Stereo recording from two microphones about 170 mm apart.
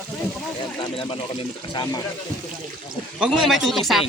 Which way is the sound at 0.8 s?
30° left (ahead or behind).